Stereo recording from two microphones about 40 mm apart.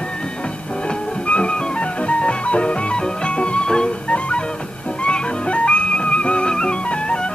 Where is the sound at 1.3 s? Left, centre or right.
Left.